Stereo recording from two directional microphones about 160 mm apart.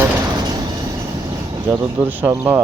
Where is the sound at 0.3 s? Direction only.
25° right (ahead or behind).